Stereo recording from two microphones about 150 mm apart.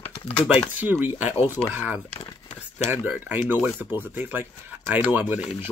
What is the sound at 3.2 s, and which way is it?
Speech, 10° right (ahead or behind).